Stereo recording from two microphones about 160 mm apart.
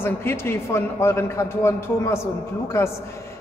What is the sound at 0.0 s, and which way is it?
A man's voice, 15° left (ahead or behind).